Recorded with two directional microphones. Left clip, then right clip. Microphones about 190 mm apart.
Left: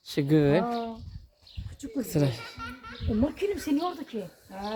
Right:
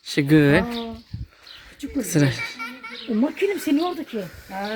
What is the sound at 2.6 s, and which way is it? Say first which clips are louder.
Music: right 7 dB; 40° right (ahead or behind).